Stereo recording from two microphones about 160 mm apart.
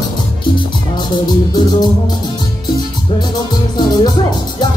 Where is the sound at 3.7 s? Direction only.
25° left (ahead or behind).